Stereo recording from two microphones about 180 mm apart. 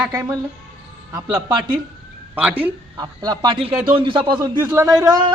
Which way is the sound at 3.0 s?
20° right (ahead or behind).